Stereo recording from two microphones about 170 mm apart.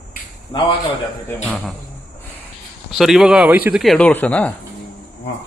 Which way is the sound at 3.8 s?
5° left (ahead or behind).